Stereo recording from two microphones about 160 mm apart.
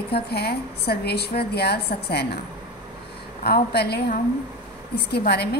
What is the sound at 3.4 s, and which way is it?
A woman's voice, 85° left.